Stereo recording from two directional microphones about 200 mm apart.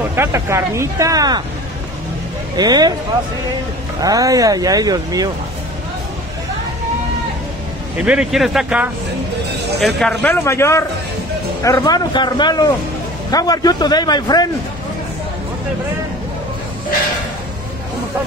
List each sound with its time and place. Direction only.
0.1 s speech: 10° right (ahead or behind)
2.5 s speech: 20° right (ahead or behind)
4.0 s speech: 15° right (ahead or behind)
8.0 s speech: 5° right (ahead or behind)
9.9 s a man's voice: 5° left (ahead or behind)